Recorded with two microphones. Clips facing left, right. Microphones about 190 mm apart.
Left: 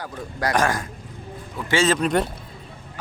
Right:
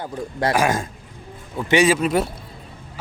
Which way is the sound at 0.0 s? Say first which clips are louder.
Right 4 dB; 25° right (ahead or behind).